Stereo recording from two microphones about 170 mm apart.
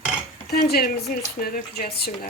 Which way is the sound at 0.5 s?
65° left (ahead or behind).